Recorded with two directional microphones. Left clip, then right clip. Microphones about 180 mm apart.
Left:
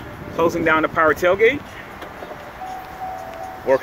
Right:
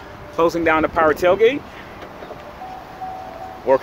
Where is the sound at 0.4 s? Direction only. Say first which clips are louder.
Right 1 dB; 20° right (ahead or behind).